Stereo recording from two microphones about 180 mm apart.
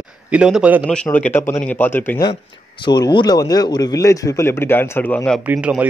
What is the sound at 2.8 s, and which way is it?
A man's voice, 25° left (ahead or behind).